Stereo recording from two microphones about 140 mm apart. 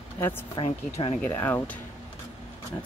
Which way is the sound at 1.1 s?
15° left (ahead or behind).